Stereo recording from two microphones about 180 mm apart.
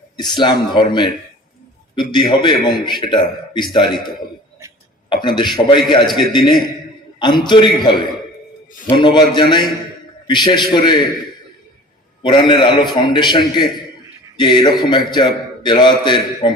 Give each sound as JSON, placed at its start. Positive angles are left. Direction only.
{"t": 0.2, "sound": "a man's voice", "side_deg": 25}
{"t": 2.3, "sound": "a man's voice", "side_deg": 25}
{"t": 5.0, "sound": "a man's voice", "side_deg": 25}
{"t": 12.2, "sound": "a man's voice", "side_deg": 25}